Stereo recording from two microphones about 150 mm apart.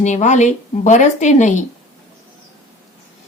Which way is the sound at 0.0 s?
50° left (ahead or behind).